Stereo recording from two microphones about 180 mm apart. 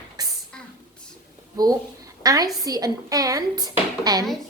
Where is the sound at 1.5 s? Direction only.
20° right (ahead or behind).